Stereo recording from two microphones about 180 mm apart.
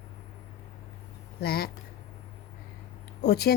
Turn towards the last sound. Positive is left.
turn(degrees=60)  # may be behind; listen again after turning